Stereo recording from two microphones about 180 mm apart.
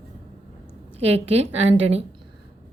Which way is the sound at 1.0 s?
35° right (ahead or behind).